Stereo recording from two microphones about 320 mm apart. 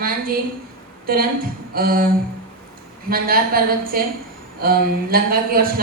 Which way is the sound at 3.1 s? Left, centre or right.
Right.